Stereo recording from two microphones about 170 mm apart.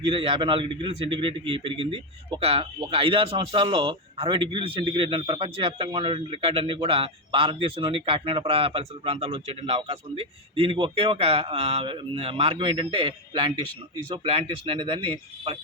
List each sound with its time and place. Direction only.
0.0 s speech: 30° right (ahead or behind)